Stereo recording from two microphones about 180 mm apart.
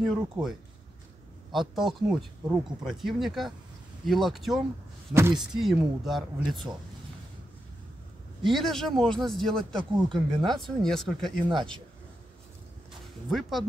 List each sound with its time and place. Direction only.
0.0 s speech: 5° right (ahead or behind)
5.1 s speech: 15° right (ahead or behind)
5.5 s speech: centre (ahead or behind)
8.5 s speech: centre (ahead or behind)
11.4 s speech: 25° right (ahead or behind)
13.3 s speech: centre (ahead or behind)